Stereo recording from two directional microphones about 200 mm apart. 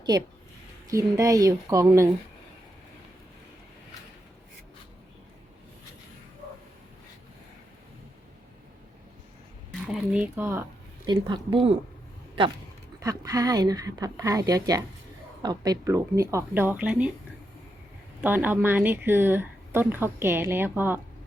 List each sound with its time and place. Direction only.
0.9 s speech: 15° right (ahead or behind)
9.8 s speech: 5° right (ahead or behind)
11.1 s speech: 25° right (ahead or behind)
13.0 s speech: 15° right (ahead or behind)
18.2 s speech: 10° right (ahead or behind)